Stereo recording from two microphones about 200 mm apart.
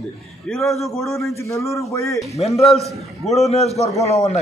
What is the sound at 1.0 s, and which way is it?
A man's voice, 15° left (ahead or behind).